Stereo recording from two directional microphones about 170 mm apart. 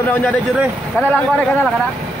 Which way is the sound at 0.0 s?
10° left (ahead or behind).